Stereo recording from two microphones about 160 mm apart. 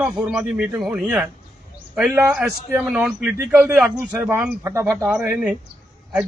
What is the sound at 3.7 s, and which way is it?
Speech, 5° right (ahead or behind).